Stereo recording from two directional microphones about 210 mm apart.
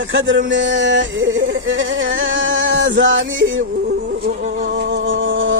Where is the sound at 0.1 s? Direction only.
60° right (ahead or behind).